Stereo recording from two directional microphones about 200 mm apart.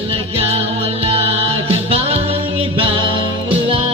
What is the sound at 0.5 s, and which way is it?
Music, 30° right (ahead or behind).